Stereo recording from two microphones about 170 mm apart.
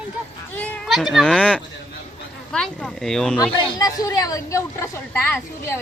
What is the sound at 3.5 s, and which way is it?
A woman's voice, 30° left (ahead or behind).